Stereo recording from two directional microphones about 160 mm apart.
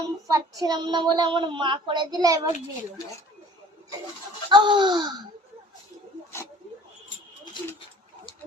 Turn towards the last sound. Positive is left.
turn(degrees=30)  # may be behind; listen again after turning